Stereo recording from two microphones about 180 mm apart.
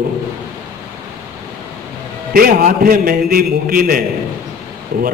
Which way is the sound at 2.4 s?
50° right (ahead or behind).